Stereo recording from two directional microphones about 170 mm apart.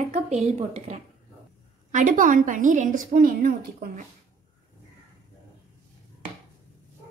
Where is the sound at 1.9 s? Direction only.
50° right (ahead or behind).